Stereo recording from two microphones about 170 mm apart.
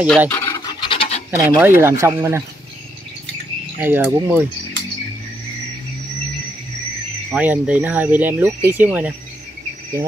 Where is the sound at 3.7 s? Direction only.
10° right (ahead or behind).